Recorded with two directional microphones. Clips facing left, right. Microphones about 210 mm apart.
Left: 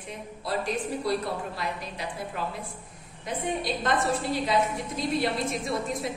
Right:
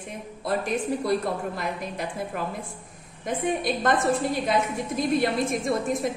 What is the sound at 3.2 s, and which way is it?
A woman's voice, 50° right (ahead or behind).